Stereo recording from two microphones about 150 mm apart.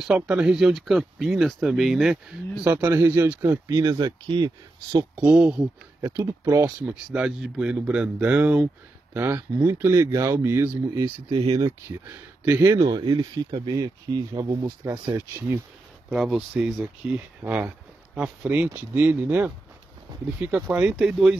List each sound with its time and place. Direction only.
0.0 s speech: 5° right (ahead or behind)
2.6 s speech: 15° right (ahead or behind)
5.1 s speech: 10° right (ahead or behind)
5.9 s speech: 20° right (ahead or behind)
6.6 s speech: 10° right (ahead or behind)
11.2 s speech: 25° right (ahead or behind)
12.8 s speech: 30° right (ahead or behind)
16.1 s speech: centre (ahead or behind)